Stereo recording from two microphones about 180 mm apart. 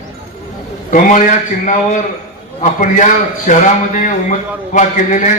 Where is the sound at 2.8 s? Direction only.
45° left (ahead or behind).